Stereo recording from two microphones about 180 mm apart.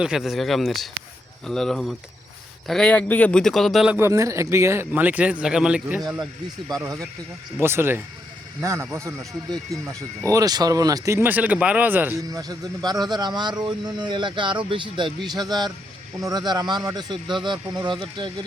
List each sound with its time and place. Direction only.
0.0 s a man's voice: 5° right (ahead or behind)
6.0 s a man's voice: 20° right (ahead or behind)
9.8 s speech: 5° left (ahead or behind)
10.2 s speech: 20° right (ahead or behind)